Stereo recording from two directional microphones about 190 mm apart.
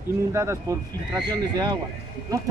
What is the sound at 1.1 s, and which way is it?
Speech, 20° right (ahead or behind).